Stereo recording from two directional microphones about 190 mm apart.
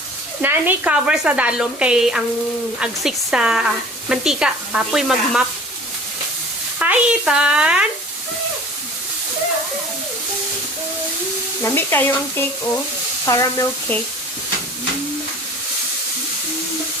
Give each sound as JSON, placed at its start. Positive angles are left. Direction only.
{"t": 0.4, "sound": "speech", "side_deg": -10}
{"t": 6.7, "sound": "speech", "side_deg": -5}
{"t": 11.6, "sound": "stir", "side_deg": 15}